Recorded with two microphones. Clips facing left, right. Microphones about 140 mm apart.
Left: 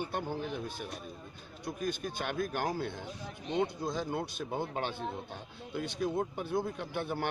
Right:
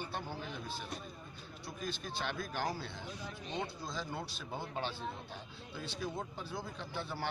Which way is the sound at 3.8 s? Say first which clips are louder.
Left 7 dB; 55° left (ahead or behind).